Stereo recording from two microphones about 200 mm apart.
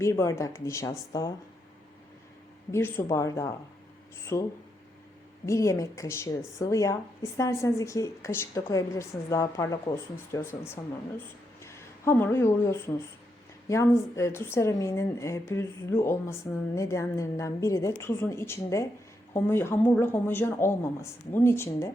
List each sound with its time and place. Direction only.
0.0 s speech: 15° left (ahead or behind)
2.7 s speech: 15° left (ahead or behind)
5.5 s speech: 15° left (ahead or behind)